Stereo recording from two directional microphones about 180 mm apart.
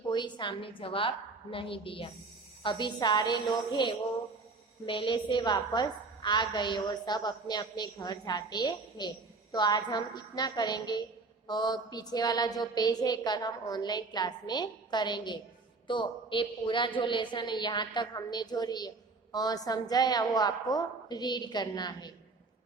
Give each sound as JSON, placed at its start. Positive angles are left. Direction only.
{"t": 0.1, "sound": "a woman's voice", "side_deg": 25}